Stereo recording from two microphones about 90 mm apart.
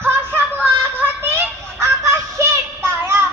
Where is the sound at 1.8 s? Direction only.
30° right (ahead or behind).